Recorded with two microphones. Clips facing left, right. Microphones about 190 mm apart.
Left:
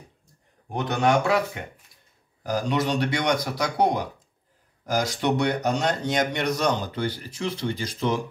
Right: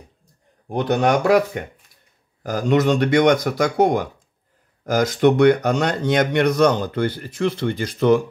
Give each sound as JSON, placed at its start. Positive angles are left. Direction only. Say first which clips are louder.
{"t": 0.7, "sound": "speech", "louder": "right 4 dB", "side_deg": -35}
{"t": 2.4, "sound": "speech", "louder": "right 7 dB", "side_deg": -50}